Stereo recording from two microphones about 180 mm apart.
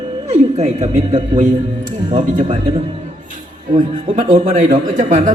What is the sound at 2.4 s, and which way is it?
Speech, 30° right (ahead or behind).